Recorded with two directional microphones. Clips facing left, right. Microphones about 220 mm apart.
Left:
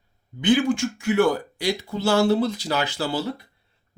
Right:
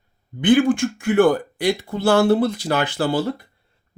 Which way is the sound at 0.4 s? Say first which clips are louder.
Right 4 dB; 55° right (ahead or behind).